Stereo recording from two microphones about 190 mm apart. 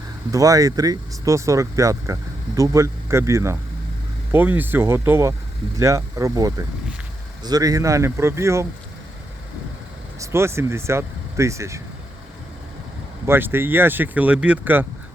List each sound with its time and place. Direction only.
0.3 s speech: 15° right (ahead or behind)
10.2 s speech: 15° right (ahead or behind)
13.2 s speech: 10° right (ahead or behind)